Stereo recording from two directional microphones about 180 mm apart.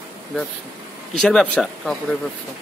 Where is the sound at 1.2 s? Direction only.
5° left (ahead or behind).